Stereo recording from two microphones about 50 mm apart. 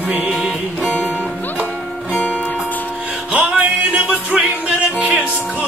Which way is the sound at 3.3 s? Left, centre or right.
Right.